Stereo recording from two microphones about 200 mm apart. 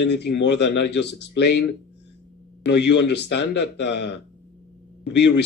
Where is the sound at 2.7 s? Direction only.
60° left (ahead or behind).